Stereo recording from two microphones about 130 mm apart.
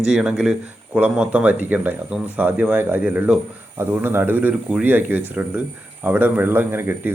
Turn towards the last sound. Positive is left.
turn(degrees=-15)  # may be behind; listen again after turning